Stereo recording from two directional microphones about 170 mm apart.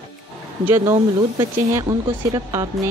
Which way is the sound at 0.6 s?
15° right (ahead or behind).